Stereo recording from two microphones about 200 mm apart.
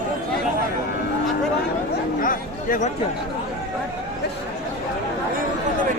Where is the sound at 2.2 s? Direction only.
45° left (ahead or behind).